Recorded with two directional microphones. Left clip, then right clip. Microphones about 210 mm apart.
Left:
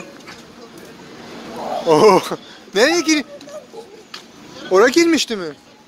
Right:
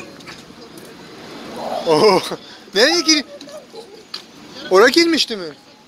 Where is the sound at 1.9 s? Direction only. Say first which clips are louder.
Left 2 dB; 25° left (ahead or behind).